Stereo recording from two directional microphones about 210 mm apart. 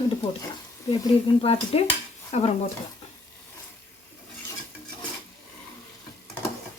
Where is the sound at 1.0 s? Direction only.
25° left (ahead or behind).